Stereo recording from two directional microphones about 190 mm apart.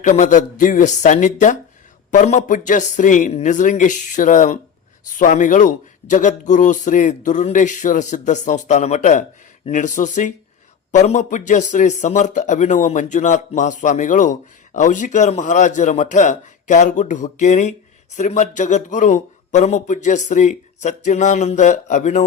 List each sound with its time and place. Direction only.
0.0 s a man's voice: 40° left (ahead or behind)